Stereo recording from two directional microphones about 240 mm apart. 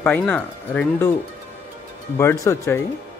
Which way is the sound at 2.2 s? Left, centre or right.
Centre.